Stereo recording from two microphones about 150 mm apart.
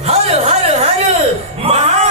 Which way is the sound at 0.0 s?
45° right (ahead or behind).